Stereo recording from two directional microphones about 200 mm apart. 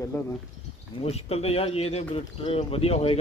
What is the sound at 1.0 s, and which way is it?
Speech, 30° left (ahead or behind).